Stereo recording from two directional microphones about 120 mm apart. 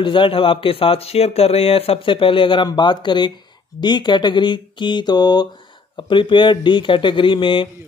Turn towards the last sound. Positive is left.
turn(degrees=45)  # may be behind; listen again after turning